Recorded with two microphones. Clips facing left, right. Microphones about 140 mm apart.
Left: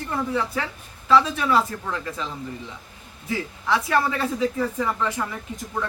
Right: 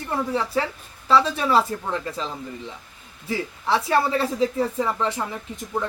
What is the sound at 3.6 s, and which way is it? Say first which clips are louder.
Speech: right 1 dB; 30° right (ahead or behind).